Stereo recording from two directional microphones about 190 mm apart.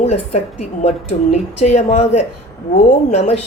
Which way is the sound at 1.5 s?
35° left (ahead or behind).